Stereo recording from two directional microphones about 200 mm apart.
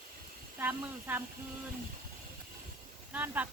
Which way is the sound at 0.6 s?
10° right (ahead or behind).